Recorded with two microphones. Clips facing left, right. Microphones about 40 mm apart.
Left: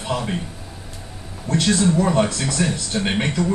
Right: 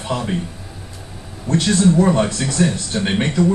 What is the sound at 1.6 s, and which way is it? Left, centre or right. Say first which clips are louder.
Speech: right 3 dB; centre.